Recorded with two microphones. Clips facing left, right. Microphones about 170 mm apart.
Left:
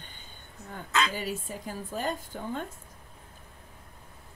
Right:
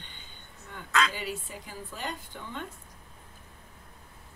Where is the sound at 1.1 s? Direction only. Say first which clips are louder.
Left 3 dB; 45° left (ahead or behind).